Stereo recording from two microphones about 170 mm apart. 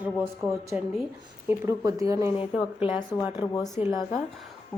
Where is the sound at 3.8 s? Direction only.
35° left (ahead or behind).